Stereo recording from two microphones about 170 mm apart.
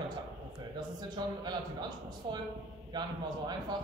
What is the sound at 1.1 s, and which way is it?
Speech, 25° right (ahead or behind).